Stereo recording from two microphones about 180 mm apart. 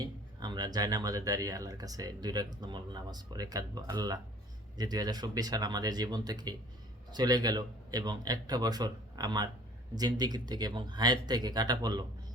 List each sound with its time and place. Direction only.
0.0 s speech: 20° right (ahead or behind)